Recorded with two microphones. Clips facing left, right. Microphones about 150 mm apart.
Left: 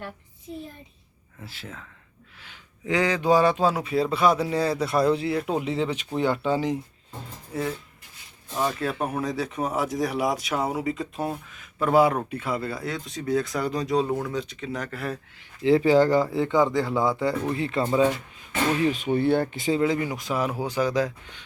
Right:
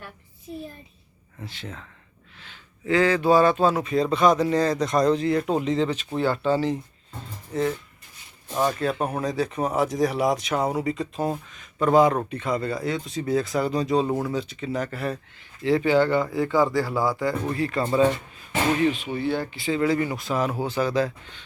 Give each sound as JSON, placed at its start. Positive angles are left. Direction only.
{"t": 1.4, "sound": "speech", "side_deg": 5}
{"t": 2.4, "sound": "speech", "side_deg": 15}
{"t": 15.6, "sound": "speech", "side_deg": 30}
{"t": 16.3, "sound": "speech", "side_deg": 20}
{"t": 18.9, "sound": "speech", "side_deg": 45}
{"t": 19.8, "sound": "speech", "side_deg": 15}